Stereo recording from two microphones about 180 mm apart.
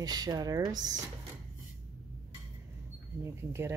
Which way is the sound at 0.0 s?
20° right (ahead or behind).